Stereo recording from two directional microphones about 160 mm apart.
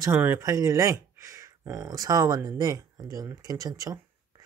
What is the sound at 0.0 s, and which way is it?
Speech, 15° right (ahead or behind).